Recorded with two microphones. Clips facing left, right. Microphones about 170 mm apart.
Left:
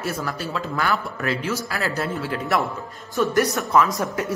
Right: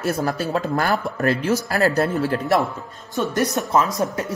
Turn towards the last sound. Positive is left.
turn(degrees=-20)  # may be behind; listen again after turning